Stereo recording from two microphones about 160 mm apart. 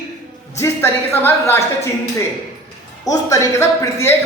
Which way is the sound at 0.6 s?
15° left (ahead or behind).